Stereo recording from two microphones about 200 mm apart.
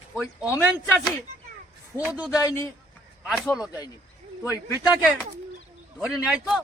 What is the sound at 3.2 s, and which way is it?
Speech, centre (ahead or behind).